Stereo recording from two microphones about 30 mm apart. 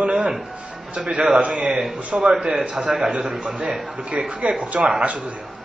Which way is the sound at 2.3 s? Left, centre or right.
Right.